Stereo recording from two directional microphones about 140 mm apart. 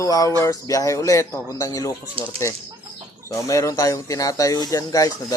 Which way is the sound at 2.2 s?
40° right (ahead or behind).